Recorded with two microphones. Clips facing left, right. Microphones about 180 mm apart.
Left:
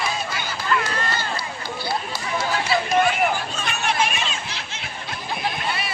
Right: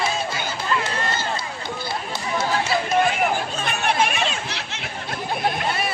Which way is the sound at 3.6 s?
55° right (ahead or behind).